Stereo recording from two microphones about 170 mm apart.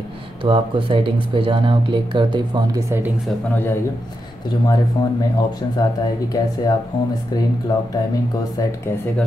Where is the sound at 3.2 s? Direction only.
10° left (ahead or behind).